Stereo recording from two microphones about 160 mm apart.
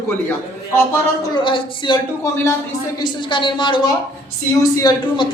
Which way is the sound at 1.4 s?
30° left (ahead or behind).